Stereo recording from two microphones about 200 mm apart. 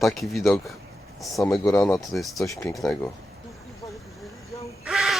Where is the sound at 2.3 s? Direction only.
15° left (ahead or behind).